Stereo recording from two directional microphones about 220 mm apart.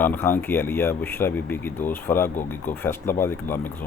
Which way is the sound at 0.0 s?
10° left (ahead or behind).